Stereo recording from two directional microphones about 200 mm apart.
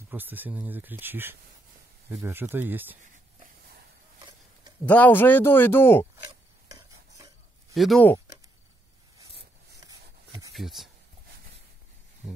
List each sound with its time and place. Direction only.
0.1 s speech: 10° right (ahead or behind)
4.8 s speech: 10° left (ahead or behind)
6.7 s stir: 15° right (ahead or behind)
7.7 s speech: centre (ahead or behind)
9.8 s a sound: 15° right (ahead or behind)
10.5 s speech: centre (ahead or behind)